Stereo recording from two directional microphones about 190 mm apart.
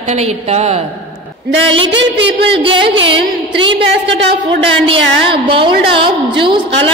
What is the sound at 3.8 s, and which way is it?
Speech, 70° right (ahead or behind).